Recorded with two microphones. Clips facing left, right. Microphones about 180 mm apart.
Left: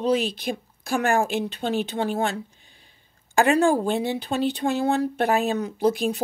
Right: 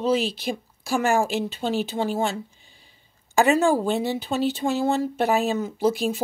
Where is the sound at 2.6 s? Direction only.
50° left (ahead or behind).